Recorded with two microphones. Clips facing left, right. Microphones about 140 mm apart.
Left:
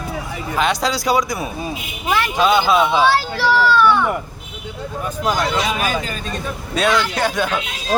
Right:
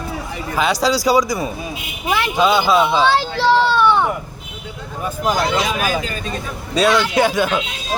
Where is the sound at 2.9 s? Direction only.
10° left (ahead or behind).